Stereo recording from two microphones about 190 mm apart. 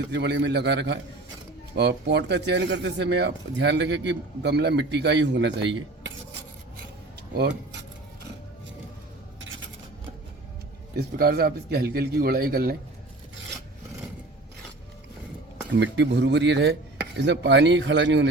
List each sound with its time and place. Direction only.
0.1 s speech: 65° right (ahead or behind)
10.9 s a man's voice: 55° right (ahead or behind)
15.7 s chopping: 65° right (ahead or behind)